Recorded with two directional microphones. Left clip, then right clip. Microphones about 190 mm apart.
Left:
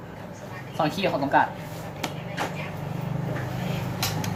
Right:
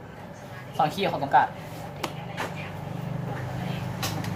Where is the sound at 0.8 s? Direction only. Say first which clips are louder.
Even; 40° right (ahead or behind).